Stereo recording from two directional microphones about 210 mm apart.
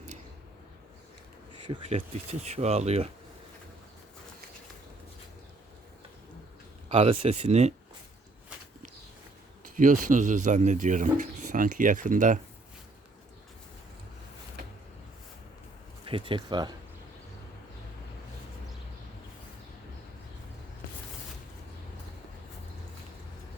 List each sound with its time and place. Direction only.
1.6 s a man's voice: 25° right (ahead or behind)
6.8 s speech: 30° right (ahead or behind)
9.7 s a man's voice: 40° right (ahead or behind)
16.0 s speech: 25° right (ahead or behind)